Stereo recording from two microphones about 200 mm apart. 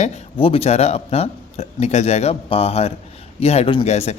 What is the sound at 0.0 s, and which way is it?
Speech, 30° left (ahead or behind).